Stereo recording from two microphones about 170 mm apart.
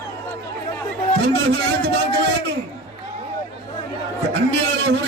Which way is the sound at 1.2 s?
90° right.